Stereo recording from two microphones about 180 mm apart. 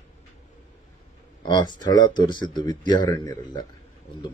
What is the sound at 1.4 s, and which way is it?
Speech, 25° left (ahead or behind).